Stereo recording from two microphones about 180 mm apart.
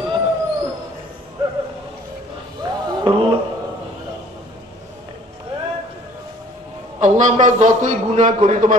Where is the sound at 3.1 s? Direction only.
30° right (ahead or behind).